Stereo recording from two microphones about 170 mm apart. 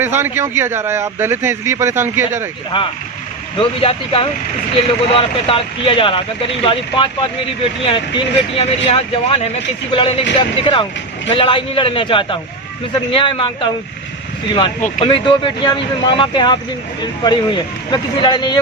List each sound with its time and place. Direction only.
0.0 s speech: 15° right (ahead or behind)
2.7 s speech: 30° left (ahead or behind)
15.0 s speech: 30° left (ahead or behind)